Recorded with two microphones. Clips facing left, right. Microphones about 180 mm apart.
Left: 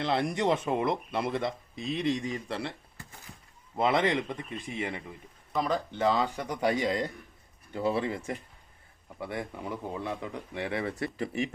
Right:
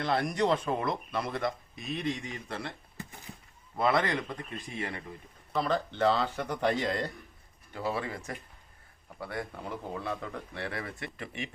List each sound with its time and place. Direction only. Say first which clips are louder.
0.0 s speech: left 1 dB; 25° left (ahead or behind)
2.1 s speech: left 5 dB; 35° left (ahead or behind)
3.8 s speech: left 2 dB; 20° left (ahead or behind)
7.7 s speech: left 5 dB; 25° left (ahead or behind)
10.9 s speech: left 8 dB; 35° left (ahead or behind)